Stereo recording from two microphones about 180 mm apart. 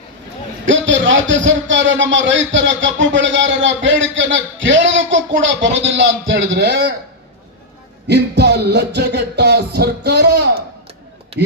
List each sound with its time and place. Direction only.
0.6 s a man's voice: 90° right; by 6.8 s 75° right (ahead or behind)
8.0 s music: 70° right (ahead or behind)